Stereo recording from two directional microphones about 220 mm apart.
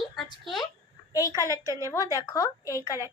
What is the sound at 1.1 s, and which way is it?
Speech, 15° left (ahead or behind).